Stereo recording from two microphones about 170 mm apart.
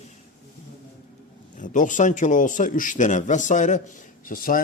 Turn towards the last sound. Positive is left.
turn(degrees=55)  # may be behind; listen again after turning